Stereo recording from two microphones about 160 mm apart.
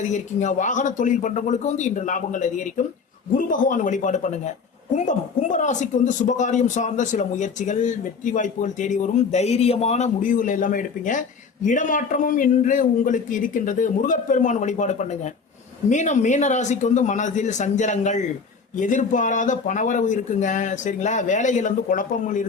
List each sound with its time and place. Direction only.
0.0 s speech: 50° left (ahead or behind)